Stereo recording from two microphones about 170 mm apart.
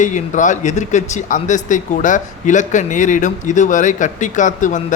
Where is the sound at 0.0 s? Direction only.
45° left (ahead or behind).